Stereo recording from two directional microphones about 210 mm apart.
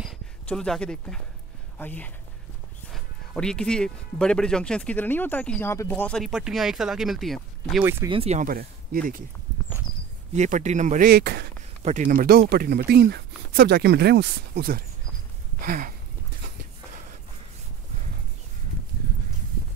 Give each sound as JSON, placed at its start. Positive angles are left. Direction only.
{"t": 0.0, "sound": "speech", "side_deg": 0}
{"t": 7.8, "sound": "speech", "side_deg": -10}
{"t": 8.1, "sound": "speech", "side_deg": -30}
{"t": 10.3, "sound": "speech", "side_deg": -35}
{"t": 11.8, "sound": "speech", "side_deg": -35}
{"t": 15.6, "sound": "a sound", "side_deg": -40}